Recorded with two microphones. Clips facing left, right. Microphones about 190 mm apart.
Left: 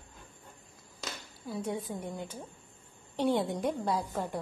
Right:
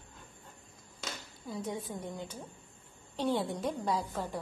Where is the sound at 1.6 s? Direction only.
10° left (ahead or behind).